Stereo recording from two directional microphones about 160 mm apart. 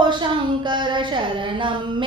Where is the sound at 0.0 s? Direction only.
30° right (ahead or behind).